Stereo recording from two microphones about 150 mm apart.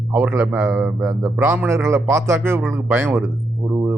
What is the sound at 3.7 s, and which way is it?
Music, 15° right (ahead or behind).